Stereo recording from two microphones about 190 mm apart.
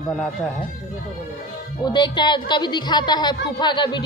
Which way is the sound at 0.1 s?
Centre (ahead or behind).